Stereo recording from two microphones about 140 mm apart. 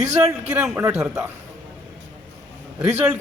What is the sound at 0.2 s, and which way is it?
A man's voice, 5° right (ahead or behind).